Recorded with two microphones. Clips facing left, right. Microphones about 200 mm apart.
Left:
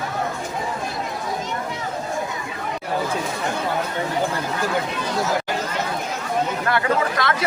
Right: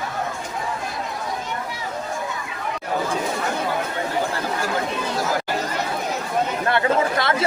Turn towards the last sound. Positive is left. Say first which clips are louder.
# right 1 dB
turn(degrees=-25)  # may be behind; listen again after turning